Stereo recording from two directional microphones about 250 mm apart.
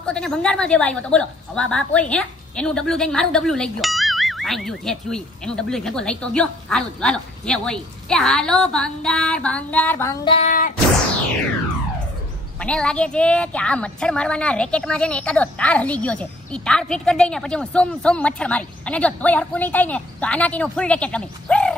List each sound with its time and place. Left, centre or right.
0.0 s a woman's voice: centre
10.2 s female singing: left
12.5 s a woman's voice: centre